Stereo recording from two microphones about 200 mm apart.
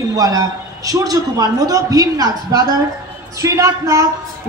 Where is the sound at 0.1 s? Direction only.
15° right (ahead or behind).